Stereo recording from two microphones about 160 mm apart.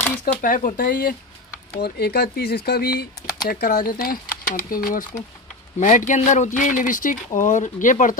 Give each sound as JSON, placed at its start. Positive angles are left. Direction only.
{"t": 0.2, "sound": "speech", "side_deg": 60}
{"t": 1.8, "sound": "speech", "side_deg": 80}